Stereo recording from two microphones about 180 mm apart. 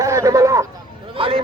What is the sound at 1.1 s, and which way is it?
Speech, 30° right (ahead or behind).